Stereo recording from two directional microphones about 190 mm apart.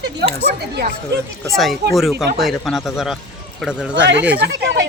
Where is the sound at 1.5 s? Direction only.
Centre (ahead or behind).